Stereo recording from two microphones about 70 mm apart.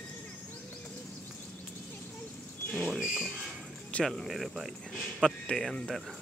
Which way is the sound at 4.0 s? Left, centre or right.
Centre.